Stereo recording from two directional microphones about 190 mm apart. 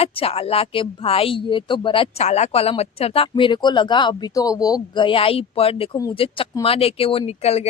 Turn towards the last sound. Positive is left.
turn(degrees=35)  # may be behind; listen again after turning